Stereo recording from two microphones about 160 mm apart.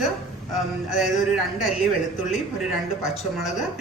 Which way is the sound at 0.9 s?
Centre (ahead or behind).